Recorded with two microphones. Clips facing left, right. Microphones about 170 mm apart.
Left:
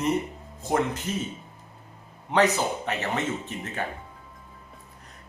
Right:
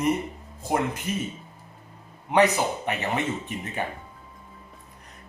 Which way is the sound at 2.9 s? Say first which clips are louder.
Right 1 dB; 15° right (ahead or behind).